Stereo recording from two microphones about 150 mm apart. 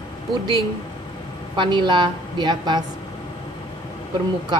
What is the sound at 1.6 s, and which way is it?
A woman's voice, 30° right (ahead or behind).